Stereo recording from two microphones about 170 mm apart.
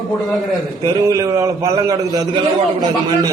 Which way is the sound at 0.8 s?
20° right (ahead or behind).